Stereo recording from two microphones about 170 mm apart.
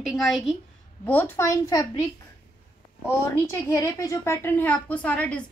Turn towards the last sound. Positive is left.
turn(degrees=5)  # may be behind; listen again after turning